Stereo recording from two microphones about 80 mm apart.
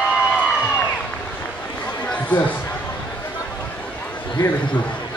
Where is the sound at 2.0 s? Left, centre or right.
Centre.